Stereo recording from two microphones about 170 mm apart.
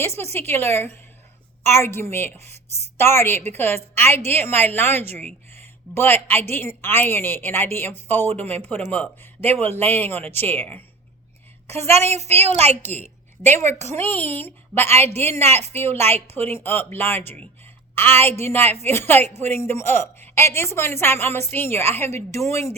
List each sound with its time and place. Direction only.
0.3 s a woman's voice: 15° left (ahead or behind)
5.5 s a sound: 15° left (ahead or behind)
6.5 s a woman's voice: 15° left (ahead or behind)
11.7 s a woman's voice: 40° right (ahead or behind)
12.8 s a woman's voice: 10° left (ahead or behind)